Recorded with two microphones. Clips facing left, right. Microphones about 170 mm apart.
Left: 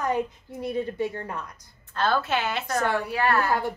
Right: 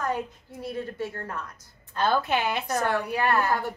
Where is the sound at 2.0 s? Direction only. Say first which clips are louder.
Even; 15° right (ahead or behind).